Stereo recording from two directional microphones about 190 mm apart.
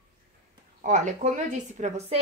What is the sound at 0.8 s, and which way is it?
A woman's voice, 40° right (ahead or behind).